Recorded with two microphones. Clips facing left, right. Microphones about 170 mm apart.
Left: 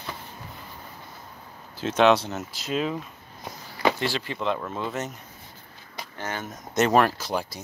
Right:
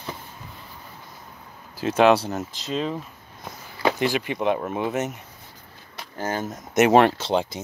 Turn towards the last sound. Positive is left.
turn(degrees=-25)  # may be behind; listen again after turning